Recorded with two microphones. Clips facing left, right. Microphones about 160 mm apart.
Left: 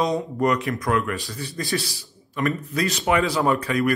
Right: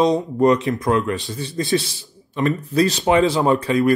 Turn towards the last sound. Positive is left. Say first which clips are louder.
# right 4 dB
turn(degrees=-25)  # may be behind; listen again after turning